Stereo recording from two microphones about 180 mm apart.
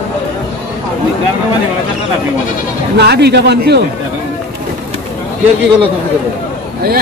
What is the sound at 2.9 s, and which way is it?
Speech, 65° right (ahead or behind).